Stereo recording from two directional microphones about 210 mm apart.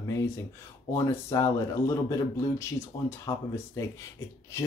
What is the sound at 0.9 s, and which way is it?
Speech, 15° left (ahead or behind).